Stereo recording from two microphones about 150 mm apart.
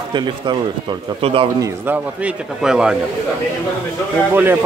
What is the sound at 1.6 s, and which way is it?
A man's voice, 10° right (ahead or behind).